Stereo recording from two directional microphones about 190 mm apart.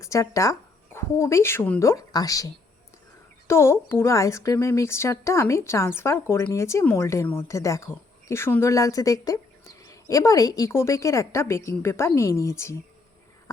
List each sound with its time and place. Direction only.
0.0 s speech: 15° left (ahead or behind)